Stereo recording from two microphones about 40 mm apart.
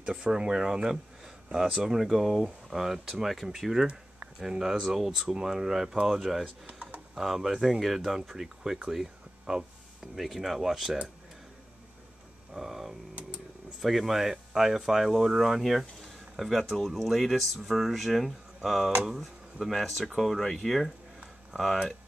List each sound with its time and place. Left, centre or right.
0.0 s speech: right
6.6 s typing: right
7.2 s speech: centre
10.1 s speech: centre
12.5 s speech: centre
16.0 s a sound: centre
16.7 s speech: centre
19.7 s speech: centre